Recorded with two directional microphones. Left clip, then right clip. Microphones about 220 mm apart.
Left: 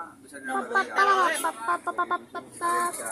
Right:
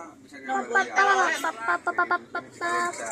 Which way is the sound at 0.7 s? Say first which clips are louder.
Right 1 dB; 20° left (ahead or behind).